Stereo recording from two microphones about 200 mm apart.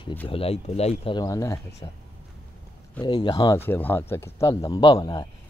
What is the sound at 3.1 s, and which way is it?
Speech, 20° left (ahead or behind).